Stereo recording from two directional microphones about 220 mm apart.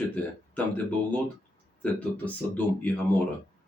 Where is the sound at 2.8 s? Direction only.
5° left (ahead or behind).